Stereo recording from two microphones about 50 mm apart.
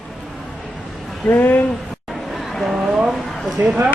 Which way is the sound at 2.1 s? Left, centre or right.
Centre.